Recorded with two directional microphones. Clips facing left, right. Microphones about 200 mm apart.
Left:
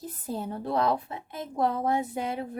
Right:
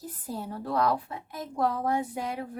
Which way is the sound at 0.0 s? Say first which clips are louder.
Left 3 dB; 20° left (ahead or behind).